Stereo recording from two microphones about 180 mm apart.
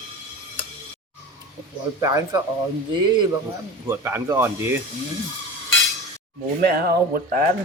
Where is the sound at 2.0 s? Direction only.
20° right (ahead or behind).